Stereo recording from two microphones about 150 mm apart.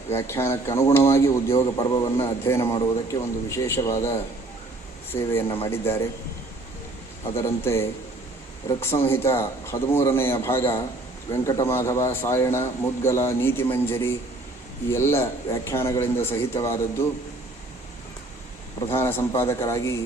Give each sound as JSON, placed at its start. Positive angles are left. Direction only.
{"t": 0.1, "sound": "speech", "side_deg": 15}
{"t": 2.2, "sound": "speech", "side_deg": 15}
{"t": 7.3, "sound": "speech", "side_deg": 15}
{"t": 18.9, "sound": "speech", "side_deg": 15}